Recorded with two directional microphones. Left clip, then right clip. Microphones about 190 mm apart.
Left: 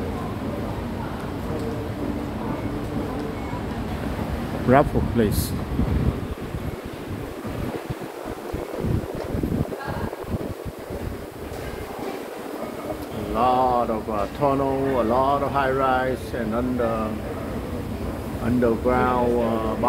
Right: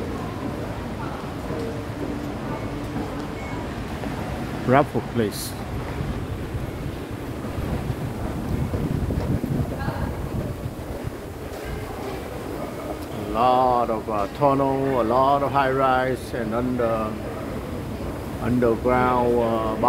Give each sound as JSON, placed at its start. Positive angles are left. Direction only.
{"t": 4.6, "sound": "speech", "side_deg": 0}
{"t": 13.4, "sound": "speech", "side_deg": -15}
{"t": 18.6, "sound": "speech", "side_deg": -15}